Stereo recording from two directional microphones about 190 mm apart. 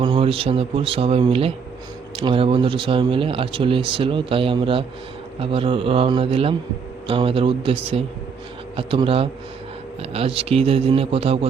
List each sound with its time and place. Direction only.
0.0 s a man's voice: 25° right (ahead or behind)